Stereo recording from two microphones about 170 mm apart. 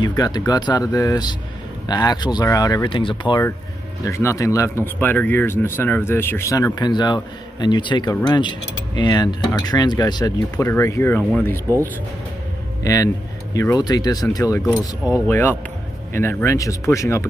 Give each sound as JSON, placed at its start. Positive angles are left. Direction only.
{"t": 0.0, "sound": "speech", "side_deg": 25}
{"t": 4.0, "sound": "speech", "side_deg": 15}
{"t": 12.8, "sound": "speech", "side_deg": 20}